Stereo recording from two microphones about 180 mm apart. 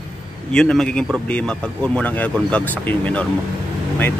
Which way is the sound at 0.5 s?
5° left (ahead or behind).